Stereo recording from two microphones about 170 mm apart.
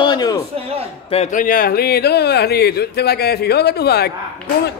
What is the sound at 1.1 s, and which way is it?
Speech, 45° left (ahead or behind).